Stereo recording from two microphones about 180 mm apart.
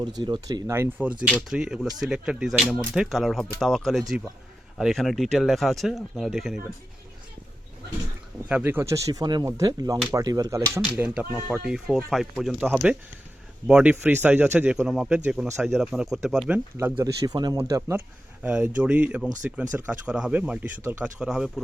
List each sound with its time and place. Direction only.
0.2 s speech: 25° right (ahead or behind); by 6.6 s centre (ahead or behind)
8.4 s speech: 10° right (ahead or behind)
11.0 s speech: 10° right (ahead or behind)
17.0 s speech: 20° right (ahead or behind); by 21.6 s centre (ahead or behind)